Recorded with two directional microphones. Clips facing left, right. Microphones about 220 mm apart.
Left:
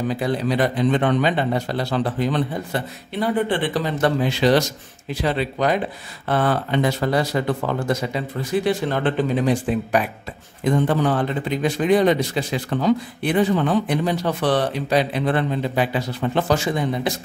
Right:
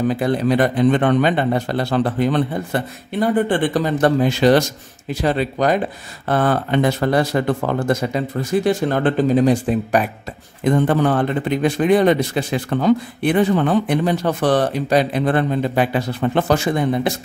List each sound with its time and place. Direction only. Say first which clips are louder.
0.1 s speech: right 4 dB; 50° right (ahead or behind)
10.6 s speech: right 3 dB; 55° right (ahead or behind)